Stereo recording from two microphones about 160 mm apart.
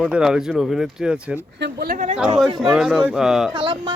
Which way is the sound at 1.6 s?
90° right.